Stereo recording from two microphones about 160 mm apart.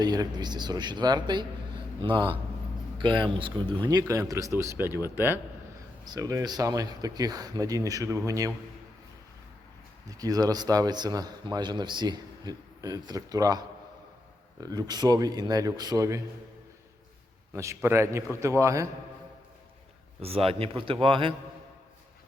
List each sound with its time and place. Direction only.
0.0 s a man's voice: 25° right (ahead or behind)
10.1 s a man's voice: 25° right (ahead or behind)
17.5 s a man's voice: 15° right (ahead or behind)
20.2 s a man's voice: 35° right (ahead or behind)